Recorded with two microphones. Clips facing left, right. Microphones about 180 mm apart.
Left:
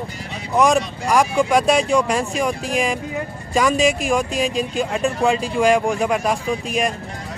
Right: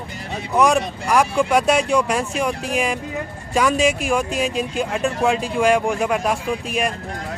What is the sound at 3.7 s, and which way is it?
Speech, 40° left (ahead or behind).